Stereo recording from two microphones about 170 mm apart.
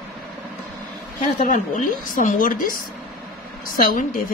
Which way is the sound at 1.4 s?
50° left (ahead or behind).